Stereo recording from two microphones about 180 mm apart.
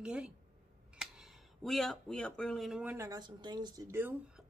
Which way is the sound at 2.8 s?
15° right (ahead or behind).